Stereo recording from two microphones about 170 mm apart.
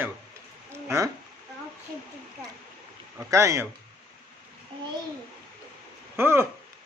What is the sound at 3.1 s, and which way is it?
Speech, 15° right (ahead or behind).